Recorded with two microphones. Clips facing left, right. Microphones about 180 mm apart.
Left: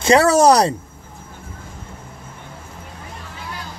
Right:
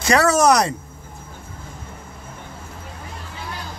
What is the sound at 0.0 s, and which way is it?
Speech, 25° left (ahead or behind).